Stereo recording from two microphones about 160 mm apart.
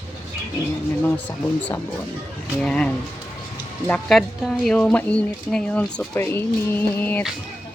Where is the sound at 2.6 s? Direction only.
5° left (ahead or behind).